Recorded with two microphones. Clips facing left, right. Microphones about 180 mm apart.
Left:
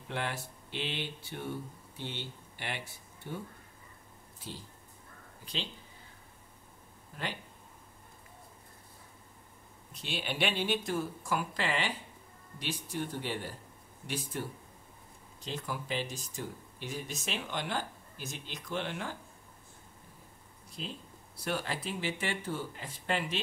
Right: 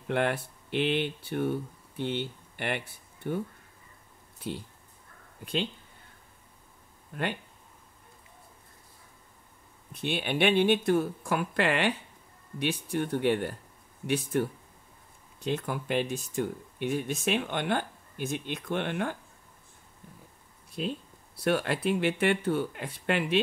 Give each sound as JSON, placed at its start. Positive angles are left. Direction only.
{"t": 0.1, "sound": "speech", "side_deg": -60}
{"t": 4.4, "sound": "speech", "side_deg": -60}
{"t": 9.9, "sound": "speech", "side_deg": -55}
{"t": 21.4, "sound": "speech", "side_deg": -65}